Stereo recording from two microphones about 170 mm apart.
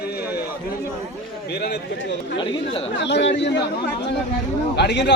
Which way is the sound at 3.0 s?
90° left.